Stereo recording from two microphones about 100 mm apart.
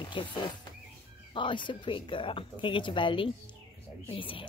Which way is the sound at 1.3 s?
55° left (ahead or behind).